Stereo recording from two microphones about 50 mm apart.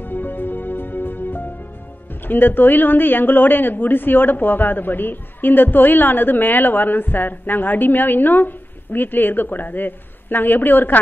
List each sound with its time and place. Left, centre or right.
0.0 s music: left
2.2 s a woman's voice: left